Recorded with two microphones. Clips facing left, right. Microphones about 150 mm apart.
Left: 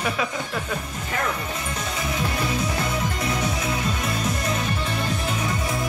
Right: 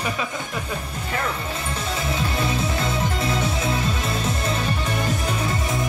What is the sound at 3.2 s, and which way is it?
Music, 25° right (ahead or behind).